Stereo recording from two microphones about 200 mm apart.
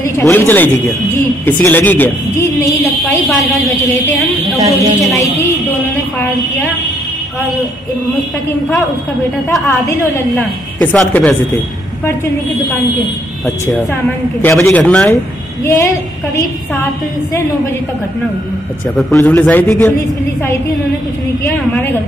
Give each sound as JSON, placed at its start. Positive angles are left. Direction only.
{"t": 0.2, "sound": "speech", "side_deg": 10}
{"t": 4.6, "sound": "speech", "side_deg": -15}
{"t": 10.3, "sound": "speech", "side_deg": 5}
{"t": 14.4, "sound": "speech", "side_deg": 10}
{"t": 19.1, "sound": "speech", "side_deg": 10}